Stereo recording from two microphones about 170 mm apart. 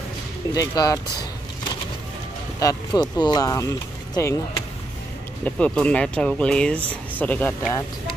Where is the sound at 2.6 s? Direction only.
20° left (ahead or behind).